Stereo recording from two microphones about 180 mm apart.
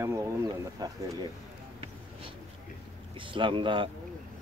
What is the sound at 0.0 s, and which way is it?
Speech, 15° right (ahead or behind).